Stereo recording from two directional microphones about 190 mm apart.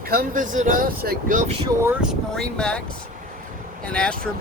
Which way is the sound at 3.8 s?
5° left (ahead or behind).